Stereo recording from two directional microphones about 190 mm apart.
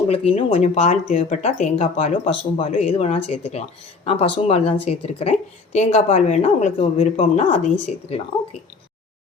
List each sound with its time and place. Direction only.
0.1 s speech: 30° left (ahead or behind)